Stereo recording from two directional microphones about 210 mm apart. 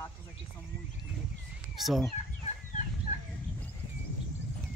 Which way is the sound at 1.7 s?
Centre (ahead or behind).